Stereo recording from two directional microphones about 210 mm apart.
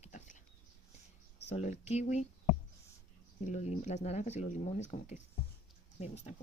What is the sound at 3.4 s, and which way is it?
Speech, 35° left (ahead or behind).